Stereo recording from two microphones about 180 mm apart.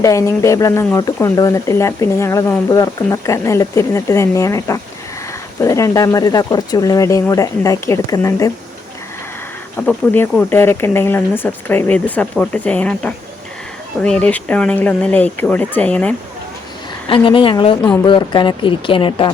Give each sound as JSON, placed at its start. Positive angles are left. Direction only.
{"t": 0.0, "sound": "speech", "side_deg": 15}
{"t": 9.7, "sound": "speech", "side_deg": 10}
{"t": 17.1, "sound": "speech", "side_deg": 30}